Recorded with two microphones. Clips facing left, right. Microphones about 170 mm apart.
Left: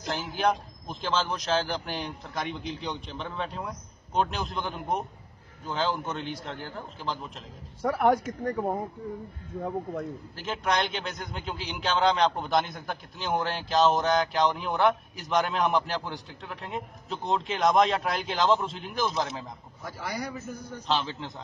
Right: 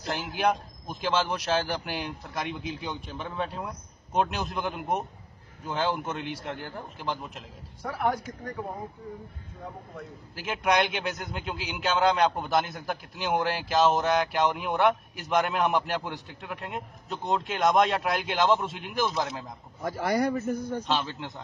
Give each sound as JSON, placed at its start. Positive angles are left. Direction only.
{"t": 0.0, "sound": "a man's voice", "side_deg": -5}
{"t": 7.8, "sound": "speech", "side_deg": 55}
{"t": 10.3, "sound": "a man's voice", "side_deg": -10}
{"t": 19.8, "sound": "a man's voice", "side_deg": -55}
{"t": 20.8, "sound": "a man's voice", "side_deg": 0}